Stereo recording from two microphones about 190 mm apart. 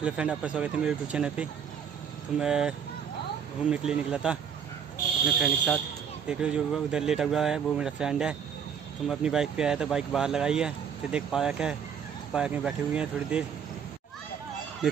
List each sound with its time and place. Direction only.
0.0 s speech: 5° right (ahead or behind)
3.7 s speech: 5° right (ahead or behind)